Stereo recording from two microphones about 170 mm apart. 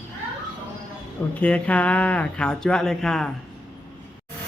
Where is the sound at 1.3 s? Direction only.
10° left (ahead or behind).